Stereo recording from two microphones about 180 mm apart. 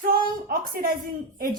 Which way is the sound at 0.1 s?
55° right (ahead or behind).